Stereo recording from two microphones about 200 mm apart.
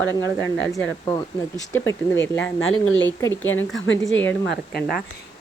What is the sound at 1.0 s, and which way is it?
Speech, 15° left (ahead or behind).